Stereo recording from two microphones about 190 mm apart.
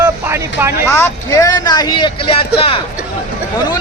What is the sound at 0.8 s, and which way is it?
Speech, 15° left (ahead or behind).